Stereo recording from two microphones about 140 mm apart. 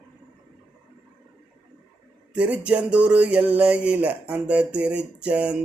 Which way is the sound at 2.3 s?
10° right (ahead or behind).